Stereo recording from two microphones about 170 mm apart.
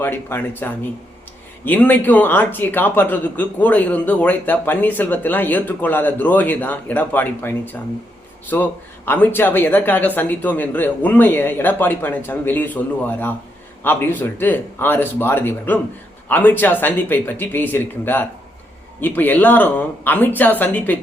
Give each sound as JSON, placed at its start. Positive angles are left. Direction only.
{"t": 0.0, "sound": "a man's voice", "side_deg": 10}